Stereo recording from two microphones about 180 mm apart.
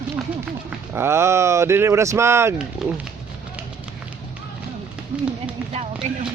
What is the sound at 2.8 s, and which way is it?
Speech, centre (ahead or behind).